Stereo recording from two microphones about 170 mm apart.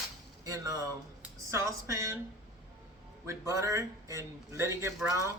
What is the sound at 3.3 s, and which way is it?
A man's voice, 15° right (ahead or behind).